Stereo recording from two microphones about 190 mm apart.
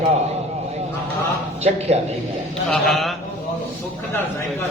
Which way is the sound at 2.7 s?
Centre (ahead or behind).